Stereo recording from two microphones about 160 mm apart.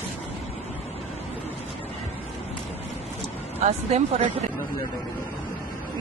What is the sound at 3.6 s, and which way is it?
Speech, 45° right (ahead or behind).